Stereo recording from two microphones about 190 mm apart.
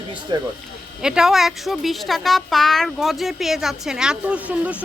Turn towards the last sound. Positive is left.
turn(degrees=-5)  # may be behind; listen again after turning